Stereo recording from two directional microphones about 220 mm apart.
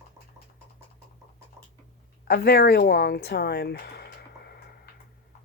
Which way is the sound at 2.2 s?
45° left (ahead or behind).